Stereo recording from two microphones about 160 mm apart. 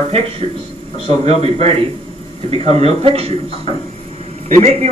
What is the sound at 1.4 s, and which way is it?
Speech, 40° right (ahead or behind).